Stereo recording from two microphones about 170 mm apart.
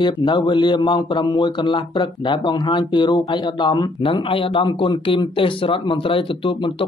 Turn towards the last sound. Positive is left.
turn(degrees=30)  # may be behind; listen again after turning